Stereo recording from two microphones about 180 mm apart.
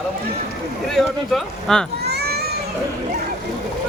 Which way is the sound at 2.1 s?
60° right (ahead or behind).